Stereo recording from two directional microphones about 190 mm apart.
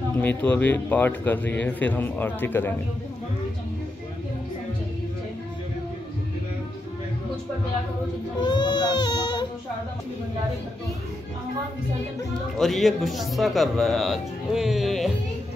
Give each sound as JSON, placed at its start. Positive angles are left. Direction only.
{"t": 0.2, "sound": "a man's voice", "side_deg": 10}
{"t": 8.4, "sound": "baby cry", "side_deg": 20}
{"t": 12.5, "sound": "speech", "side_deg": 0}